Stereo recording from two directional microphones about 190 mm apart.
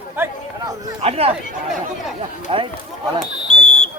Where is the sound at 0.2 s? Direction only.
20° right (ahead or behind).